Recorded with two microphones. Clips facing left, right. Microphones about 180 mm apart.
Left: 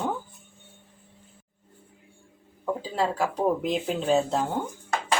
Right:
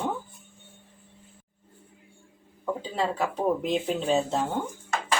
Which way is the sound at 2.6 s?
5° left (ahead or behind).